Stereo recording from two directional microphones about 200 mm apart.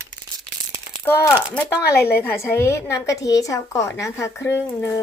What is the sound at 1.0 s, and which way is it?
A woman's voice, 10° left (ahead or behind).